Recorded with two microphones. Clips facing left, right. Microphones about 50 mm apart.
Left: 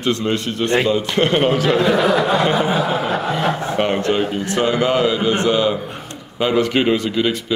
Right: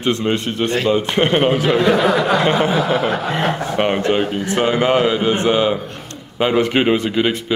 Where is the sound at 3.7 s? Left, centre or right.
Centre.